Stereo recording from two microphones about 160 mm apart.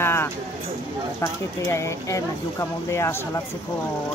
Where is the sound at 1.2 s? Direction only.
15° left (ahead or behind).